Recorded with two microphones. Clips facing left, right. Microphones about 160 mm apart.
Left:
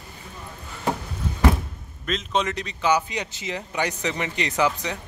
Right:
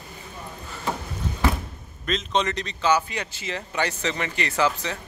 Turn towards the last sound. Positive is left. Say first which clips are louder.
# left 1 dB
turn(degrees=15)  # may be behind; listen again after turning